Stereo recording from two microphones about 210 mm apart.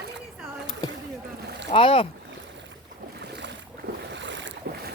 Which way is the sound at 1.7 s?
25° left (ahead or behind).